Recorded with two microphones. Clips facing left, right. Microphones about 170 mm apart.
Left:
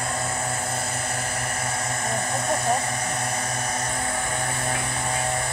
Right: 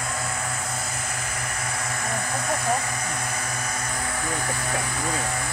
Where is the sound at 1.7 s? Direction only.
30° left (ahead or behind).